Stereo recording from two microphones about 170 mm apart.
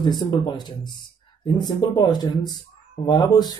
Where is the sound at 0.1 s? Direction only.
25° left (ahead or behind).